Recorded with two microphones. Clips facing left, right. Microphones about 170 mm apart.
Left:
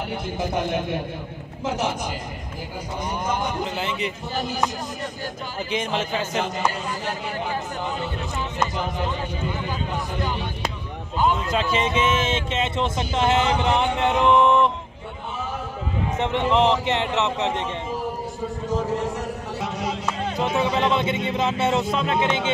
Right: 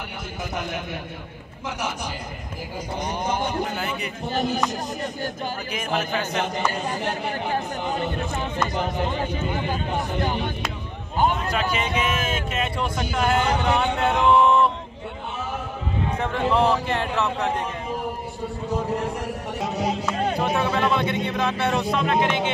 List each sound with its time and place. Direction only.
0.4 s speech: 25° left (ahead or behind)
3.7 s speech: 25° left (ahead or behind)
5.7 s speech: 25° left (ahead or behind)
11.5 s speech: 25° left (ahead or behind)
14.2 s a sound: 20° left (ahead or behind)
16.2 s speech: 20° left (ahead or behind)
19.6 s speech: 30° right (ahead or behind)
20.3 s speech: 20° left (ahead or behind)